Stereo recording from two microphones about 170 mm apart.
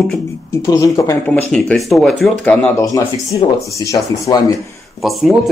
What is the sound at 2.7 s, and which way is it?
Speech, 20° left (ahead or behind).